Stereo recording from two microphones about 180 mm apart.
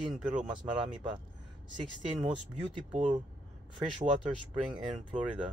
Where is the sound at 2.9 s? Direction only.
45° right (ahead or behind).